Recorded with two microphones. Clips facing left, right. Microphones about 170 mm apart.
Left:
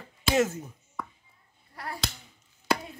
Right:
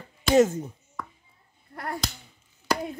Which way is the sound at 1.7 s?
55° right (ahead or behind).